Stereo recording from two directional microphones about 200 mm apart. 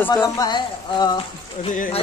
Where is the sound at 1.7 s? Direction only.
40° left (ahead or behind).